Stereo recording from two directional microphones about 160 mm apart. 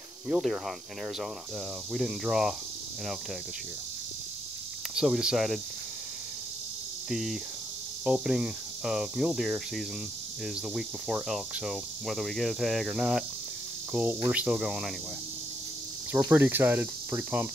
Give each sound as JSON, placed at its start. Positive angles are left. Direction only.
{"t": 0.3, "sound": "speech", "side_deg": 0}
{"t": 1.9, "sound": "speech", "side_deg": -5}
{"t": 4.9, "sound": "speech", "side_deg": -5}
{"t": 7.1, "sound": "speech", "side_deg": 0}
{"t": 16.3, "sound": "speech", "side_deg": -10}